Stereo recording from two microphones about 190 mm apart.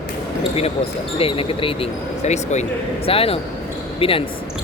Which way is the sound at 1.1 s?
30° left (ahead or behind).